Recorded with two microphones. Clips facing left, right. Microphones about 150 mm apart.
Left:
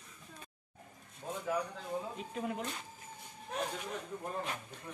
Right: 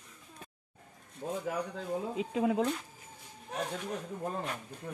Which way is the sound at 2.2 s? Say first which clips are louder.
Right 9 dB; 90° right.